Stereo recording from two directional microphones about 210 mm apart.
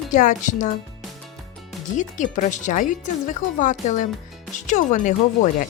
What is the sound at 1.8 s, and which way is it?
Speech, 35° left (ahead or behind).